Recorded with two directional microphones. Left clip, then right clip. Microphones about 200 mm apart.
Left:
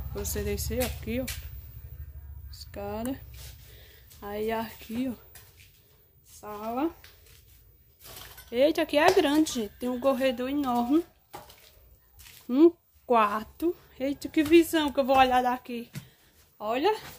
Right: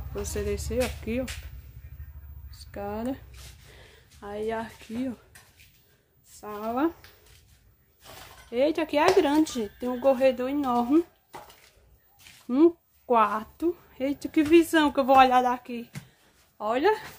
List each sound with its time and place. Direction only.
0.2 s speech: 10° right (ahead or behind)
2.5 s speech: 10° right (ahead or behind)
4.2 s a woman's voice: 10° left (ahead or behind)
6.4 s speech: 20° right (ahead or behind)
8.5 s speech: 5° left (ahead or behind)
12.4 s speech: 5° left (ahead or behind)
15.5 s speech: centre (ahead or behind)
16.5 s speech: 15° right (ahead or behind)